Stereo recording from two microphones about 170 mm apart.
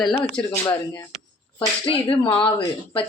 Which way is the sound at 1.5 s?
30° left (ahead or behind).